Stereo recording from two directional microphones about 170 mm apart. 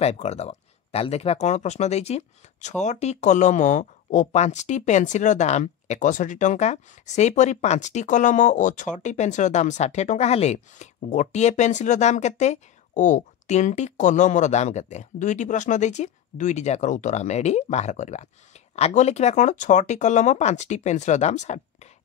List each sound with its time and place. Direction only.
0.0 s speech: 40° left (ahead or behind)